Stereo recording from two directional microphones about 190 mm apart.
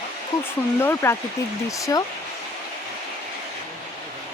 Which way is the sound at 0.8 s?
15° left (ahead or behind).